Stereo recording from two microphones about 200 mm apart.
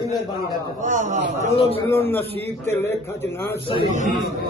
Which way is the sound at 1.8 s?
10° left (ahead or behind).